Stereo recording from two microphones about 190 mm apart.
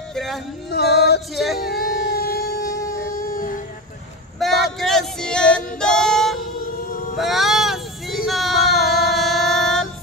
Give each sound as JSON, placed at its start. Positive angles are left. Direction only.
{"t": 0.1, "sound": "music", "side_deg": 0}
{"t": 0.7, "sound": "music", "side_deg": 60}
{"t": 1.3, "sound": "speech", "side_deg": 0}
{"t": 1.7, "sound": "a sound", "side_deg": 55}
{"t": 4.4, "sound": "male singing", "side_deg": 0}
{"t": 5.8, "sound": "female singing", "side_deg": 5}
{"t": 6.9, "sound": "a sound", "side_deg": 45}
{"t": 7.2, "sound": "vehicle", "side_deg": 0}
{"t": 8.3, "sound": "music", "side_deg": 0}